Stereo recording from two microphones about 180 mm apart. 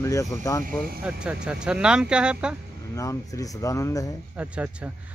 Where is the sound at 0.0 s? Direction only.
15° left (ahead or behind).